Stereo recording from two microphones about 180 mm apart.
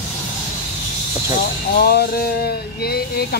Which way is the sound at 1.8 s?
60° left (ahead or behind).